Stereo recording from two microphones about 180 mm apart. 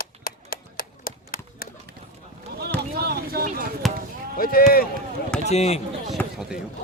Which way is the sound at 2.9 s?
60° right (ahead or behind).